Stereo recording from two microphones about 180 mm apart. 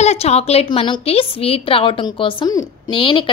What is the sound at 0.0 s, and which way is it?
A woman's voice, 35° left (ahead or behind).